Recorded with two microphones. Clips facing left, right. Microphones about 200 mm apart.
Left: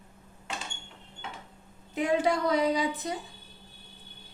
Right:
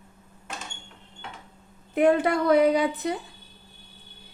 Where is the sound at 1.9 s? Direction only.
60° right (ahead or behind).